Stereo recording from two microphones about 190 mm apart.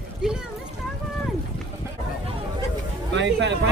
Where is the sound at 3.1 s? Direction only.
70° right (ahead or behind).